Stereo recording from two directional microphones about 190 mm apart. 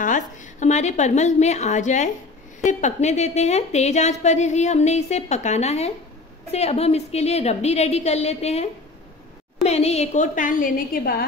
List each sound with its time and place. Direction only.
0.0 s a woman's voice: 40° left (ahead or behind)
9.7 s a woman's voice: 35° left (ahead or behind); by 11.2 s 50° left (ahead or behind)